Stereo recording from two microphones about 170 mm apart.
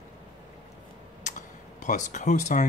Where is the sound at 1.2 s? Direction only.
45° left (ahead or behind).